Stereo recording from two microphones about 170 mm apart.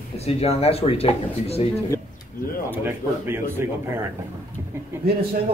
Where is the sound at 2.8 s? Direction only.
15° right (ahead or behind).